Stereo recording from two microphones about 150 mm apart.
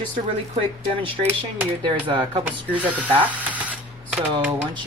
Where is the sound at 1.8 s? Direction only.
35° right (ahead or behind).